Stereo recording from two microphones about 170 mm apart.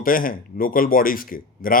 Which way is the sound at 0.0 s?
55° left (ahead or behind).